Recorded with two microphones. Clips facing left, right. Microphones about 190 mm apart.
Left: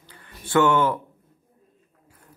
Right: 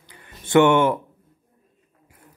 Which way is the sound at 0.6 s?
25° right (ahead or behind).